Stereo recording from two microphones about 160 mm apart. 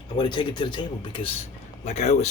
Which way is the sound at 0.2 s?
30° left (ahead or behind).